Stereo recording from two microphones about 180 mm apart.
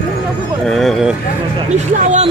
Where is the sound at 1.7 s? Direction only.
40° right (ahead or behind).